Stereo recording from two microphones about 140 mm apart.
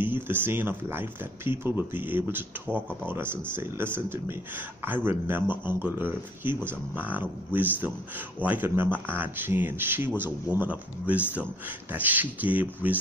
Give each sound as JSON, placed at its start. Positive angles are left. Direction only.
{"t": 0.0, "sound": "speech", "side_deg": -15}